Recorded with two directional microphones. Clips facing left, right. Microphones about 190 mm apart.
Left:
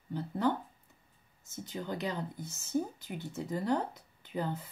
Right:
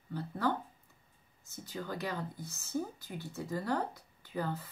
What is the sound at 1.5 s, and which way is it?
Speech, 20° left (ahead or behind).